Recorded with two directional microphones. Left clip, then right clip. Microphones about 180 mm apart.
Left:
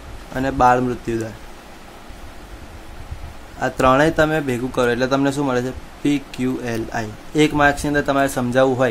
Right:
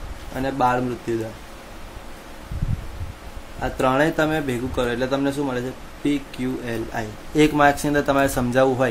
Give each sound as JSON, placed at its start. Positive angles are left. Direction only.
{"t": 0.3, "sound": "speech", "side_deg": 30}
{"t": 3.6, "sound": "speech", "side_deg": 35}
{"t": 7.3, "sound": "speech", "side_deg": 10}